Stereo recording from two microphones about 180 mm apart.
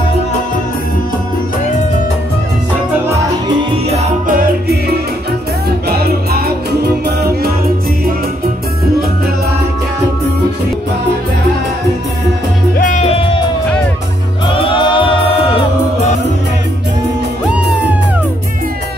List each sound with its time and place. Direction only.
4.3 s music: 60° right (ahead or behind)
12.7 s music: 45° left (ahead or behind)
14.5 s music: 30° left (ahead or behind)